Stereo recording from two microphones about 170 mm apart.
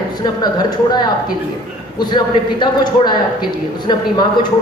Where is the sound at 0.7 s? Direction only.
25° left (ahead or behind).